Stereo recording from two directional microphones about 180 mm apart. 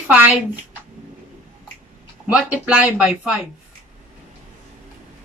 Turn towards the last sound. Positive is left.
turn(degrees=-5)  # may be behind; listen again after turning